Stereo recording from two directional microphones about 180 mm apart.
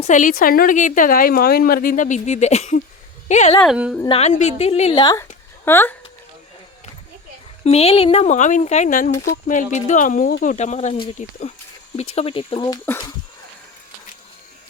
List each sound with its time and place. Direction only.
0.0 s a woman's voice: 45° left (ahead or behind)
3.6 s a woman's voice: 5° right (ahead or behind)
4.0 s speech: 30° left (ahead or behind)
5.6 s speech: 10° left (ahead or behind)
7.6 s a woman's voice: 35° left (ahead or behind); by 10.5 s 50° left (ahead or behind)
10.5 s speech: 40° left (ahead or behind)
11.2 s a woman's voice: 45° left (ahead or behind)
12.6 s speech: 15° left (ahead or behind)